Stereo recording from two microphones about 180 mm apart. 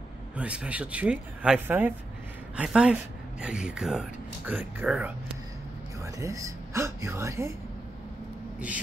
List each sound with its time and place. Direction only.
0.4 s a man's voice: 5° right (ahead or behind)
6.0 s speech: 20° right (ahead or behind)